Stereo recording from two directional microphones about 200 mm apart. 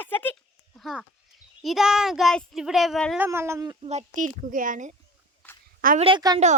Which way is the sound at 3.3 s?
15° right (ahead or behind).